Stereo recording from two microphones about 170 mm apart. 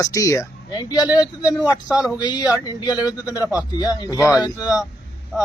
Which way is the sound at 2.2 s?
25° left (ahead or behind).